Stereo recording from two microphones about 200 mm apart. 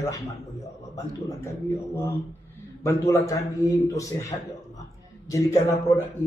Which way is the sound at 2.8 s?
15° left (ahead or behind).